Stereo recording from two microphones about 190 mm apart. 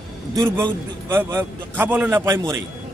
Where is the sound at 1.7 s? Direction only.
10° right (ahead or behind).